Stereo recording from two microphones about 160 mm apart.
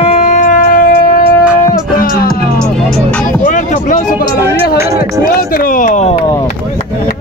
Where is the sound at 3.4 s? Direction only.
55° left (ahead or behind).